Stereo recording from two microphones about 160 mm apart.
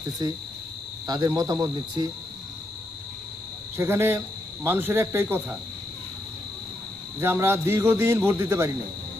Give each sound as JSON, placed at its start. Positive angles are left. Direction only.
{"t": 1.0, "sound": "speech", "side_deg": -25}
{"t": 3.8, "sound": "a man's voice", "side_deg": -15}
{"t": 7.2, "sound": "a man's voice", "side_deg": -15}